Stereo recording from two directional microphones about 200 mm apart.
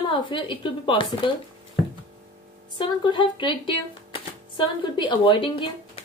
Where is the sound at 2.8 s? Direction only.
20° left (ahead or behind).